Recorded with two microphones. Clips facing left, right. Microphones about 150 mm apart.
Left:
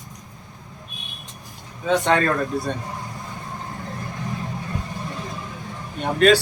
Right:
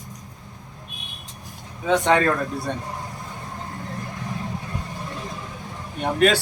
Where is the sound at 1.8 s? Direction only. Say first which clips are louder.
Even; 10° right (ahead or behind).